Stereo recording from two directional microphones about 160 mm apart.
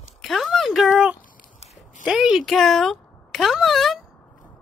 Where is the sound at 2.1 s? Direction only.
5° right (ahead or behind).